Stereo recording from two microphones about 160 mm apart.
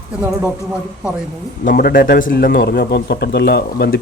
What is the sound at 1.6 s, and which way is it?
A man's voice, 65° left (ahead or behind).